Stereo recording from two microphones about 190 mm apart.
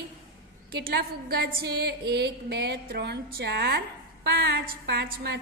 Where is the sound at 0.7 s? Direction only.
55° right (ahead or behind).